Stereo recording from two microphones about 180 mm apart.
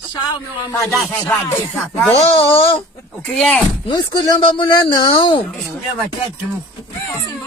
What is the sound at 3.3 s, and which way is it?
Speech, centre (ahead or behind).